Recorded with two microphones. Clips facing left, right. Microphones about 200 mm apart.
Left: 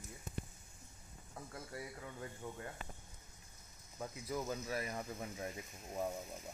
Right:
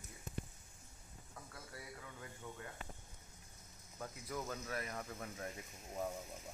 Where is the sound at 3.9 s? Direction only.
10° left (ahead or behind).